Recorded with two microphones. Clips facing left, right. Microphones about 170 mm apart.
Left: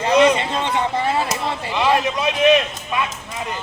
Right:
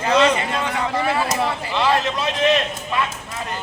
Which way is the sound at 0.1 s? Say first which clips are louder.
Left 2 dB; 15° left (ahead or behind).